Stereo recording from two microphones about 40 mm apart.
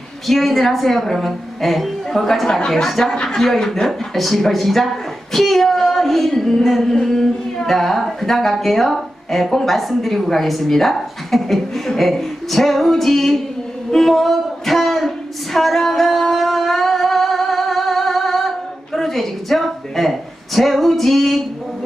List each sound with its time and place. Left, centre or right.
0.3 s a man's voice: centre
13.9 s a sound: centre
18.9 s a woman's voice: centre